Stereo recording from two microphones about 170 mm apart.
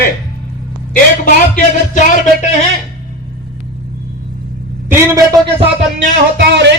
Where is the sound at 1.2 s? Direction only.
55° left (ahead or behind).